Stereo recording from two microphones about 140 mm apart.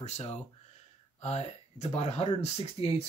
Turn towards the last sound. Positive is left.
turn(degrees=45)  # may be behind; listen again after turning